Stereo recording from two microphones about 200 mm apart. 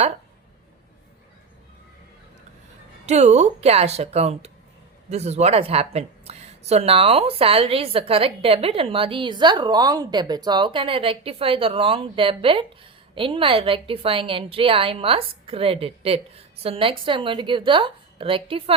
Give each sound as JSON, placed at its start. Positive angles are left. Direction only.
{"t": 3.1, "sound": "a woman's voice", "side_deg": -35}